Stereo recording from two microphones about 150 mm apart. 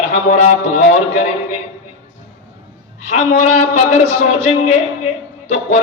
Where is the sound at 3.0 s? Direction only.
50° left (ahead or behind).